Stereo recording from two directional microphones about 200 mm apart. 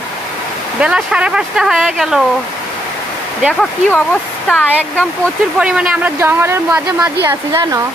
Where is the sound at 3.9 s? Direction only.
5° left (ahead or behind).